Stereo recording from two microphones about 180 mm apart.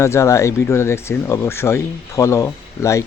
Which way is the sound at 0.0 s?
15° left (ahead or behind).